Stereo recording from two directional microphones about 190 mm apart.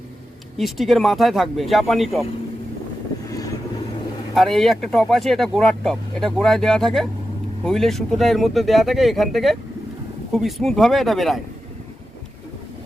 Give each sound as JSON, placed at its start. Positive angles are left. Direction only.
{"t": 0.5, "sound": "speech", "side_deg": 0}
{"t": 3.2, "sound": "vehicle", "side_deg": 20}
{"t": 4.4, "sound": "speech", "side_deg": 0}